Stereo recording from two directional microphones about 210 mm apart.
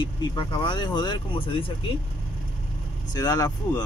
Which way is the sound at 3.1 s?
15° left (ahead or behind).